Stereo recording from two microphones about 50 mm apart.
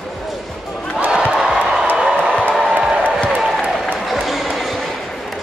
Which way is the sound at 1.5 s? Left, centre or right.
Centre.